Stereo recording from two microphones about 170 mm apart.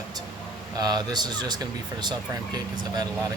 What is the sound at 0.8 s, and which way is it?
Speech, 25° right (ahead or behind).